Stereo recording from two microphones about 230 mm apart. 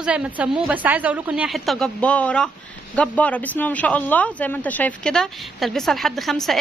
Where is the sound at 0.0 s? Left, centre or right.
Centre.